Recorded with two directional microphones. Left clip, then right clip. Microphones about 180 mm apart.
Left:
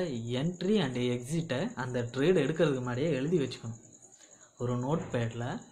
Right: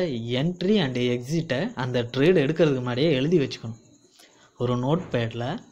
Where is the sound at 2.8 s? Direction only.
45° right (ahead or behind).